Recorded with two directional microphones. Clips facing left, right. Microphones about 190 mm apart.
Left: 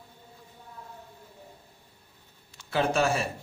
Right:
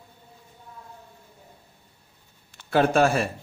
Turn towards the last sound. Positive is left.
turn(degrees=-55)  # may be behind; listen again after turning